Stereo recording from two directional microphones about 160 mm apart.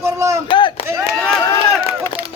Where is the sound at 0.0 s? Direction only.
20° right (ahead or behind).